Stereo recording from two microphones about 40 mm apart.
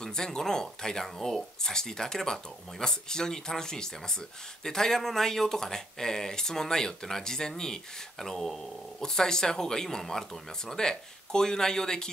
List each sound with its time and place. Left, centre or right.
0.0 s speech: centre